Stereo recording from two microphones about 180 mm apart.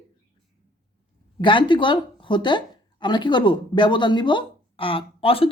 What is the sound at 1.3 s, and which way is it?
Speech, 25° left (ahead or behind).